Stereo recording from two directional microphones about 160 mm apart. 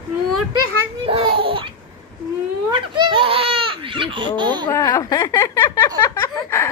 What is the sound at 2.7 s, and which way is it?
Speech, 30° right (ahead or behind).